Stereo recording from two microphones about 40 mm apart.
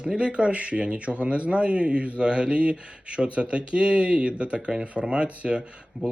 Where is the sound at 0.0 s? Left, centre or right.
Right.